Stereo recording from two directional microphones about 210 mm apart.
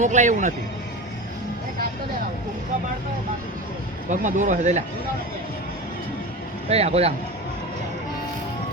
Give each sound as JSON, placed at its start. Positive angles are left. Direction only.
{"t": 0.0, "sound": "speech", "side_deg": -35}
{"t": 4.1, "sound": "speech", "side_deg": -35}
{"t": 6.7, "sound": "speech", "side_deg": -30}